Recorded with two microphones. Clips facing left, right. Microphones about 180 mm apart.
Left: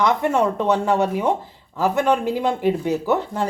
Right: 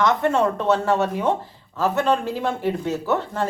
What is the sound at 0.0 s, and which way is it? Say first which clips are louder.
Speech: left 1 dB; 15° left (ahead or behind).